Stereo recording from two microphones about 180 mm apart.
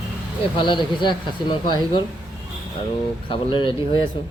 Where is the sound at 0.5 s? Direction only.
25° left (ahead or behind).